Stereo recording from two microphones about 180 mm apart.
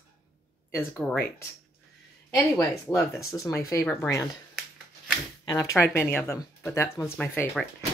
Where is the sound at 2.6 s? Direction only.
15° left (ahead or behind).